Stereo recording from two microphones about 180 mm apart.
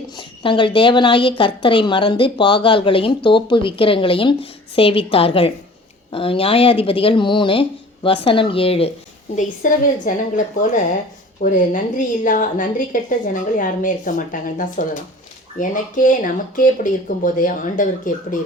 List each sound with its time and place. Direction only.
0.2 s a woman's voice: 25° left (ahead or behind)
9.3 s a woman's voice: 45° left (ahead or behind)